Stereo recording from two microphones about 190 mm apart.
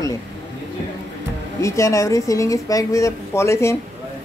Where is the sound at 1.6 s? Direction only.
15° left (ahead or behind).